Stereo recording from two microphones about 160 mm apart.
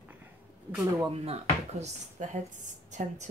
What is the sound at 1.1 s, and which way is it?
Speech, 40° right (ahead or behind).